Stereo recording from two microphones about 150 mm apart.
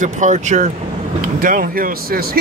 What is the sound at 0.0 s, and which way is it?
Speech, 55° right (ahead or behind).